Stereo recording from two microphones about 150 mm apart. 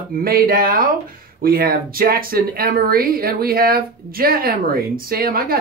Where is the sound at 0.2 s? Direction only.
75° right (ahead or behind).